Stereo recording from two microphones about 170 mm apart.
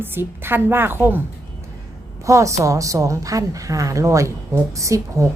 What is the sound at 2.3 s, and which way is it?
A woman's voice, 20° right (ahead or behind).